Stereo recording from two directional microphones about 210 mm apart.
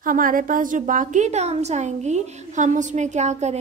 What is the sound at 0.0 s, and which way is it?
A woman's voice, 40° right (ahead or behind).